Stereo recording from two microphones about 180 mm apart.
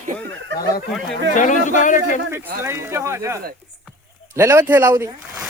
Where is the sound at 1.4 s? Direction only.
45° left (ahead or behind).